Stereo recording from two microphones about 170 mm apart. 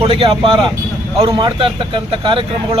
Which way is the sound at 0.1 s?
30° right (ahead or behind).